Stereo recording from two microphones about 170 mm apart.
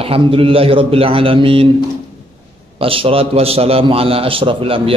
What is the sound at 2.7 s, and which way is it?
A man's voice, 35° right (ahead or behind).